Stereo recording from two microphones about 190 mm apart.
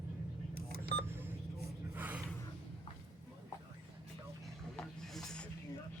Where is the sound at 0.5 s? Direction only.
55° right (ahead or behind).